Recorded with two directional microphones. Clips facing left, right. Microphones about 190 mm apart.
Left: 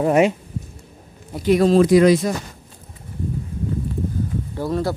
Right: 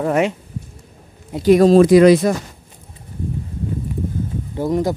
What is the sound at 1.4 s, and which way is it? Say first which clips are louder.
Speech: right 4 dB; 40° right (ahead or behind).